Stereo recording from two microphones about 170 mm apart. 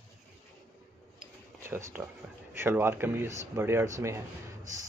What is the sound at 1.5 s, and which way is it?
Speech, 15° right (ahead or behind).